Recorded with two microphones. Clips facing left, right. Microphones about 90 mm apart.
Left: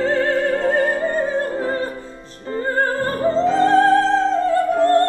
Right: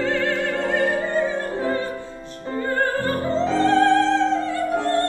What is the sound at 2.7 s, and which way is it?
Music, 35° left (ahead or behind).